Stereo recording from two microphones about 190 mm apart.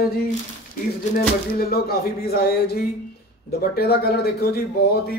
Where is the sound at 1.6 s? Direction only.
55° left (ahead or behind).